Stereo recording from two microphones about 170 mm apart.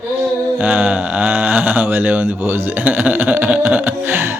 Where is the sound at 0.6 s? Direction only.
10° right (ahead or behind).